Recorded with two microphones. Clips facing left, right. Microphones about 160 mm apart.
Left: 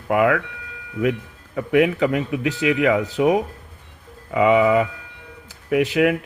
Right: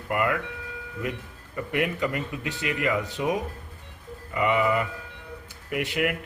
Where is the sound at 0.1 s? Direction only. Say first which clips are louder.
Left 8 dB; 90° left.